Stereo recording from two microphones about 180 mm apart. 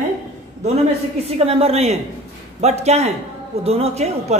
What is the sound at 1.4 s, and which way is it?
Speech, 35° right (ahead or behind).